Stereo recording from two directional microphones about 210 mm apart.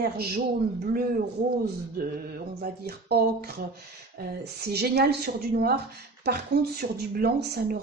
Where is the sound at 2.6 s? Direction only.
50° right (ahead or behind).